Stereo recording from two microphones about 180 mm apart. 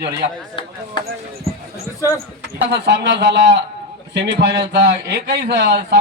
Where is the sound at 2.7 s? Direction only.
75° right (ahead or behind).